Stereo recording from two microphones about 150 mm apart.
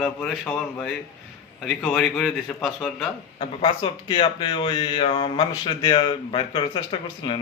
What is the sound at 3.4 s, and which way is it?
Speech, 30° left (ahead or behind).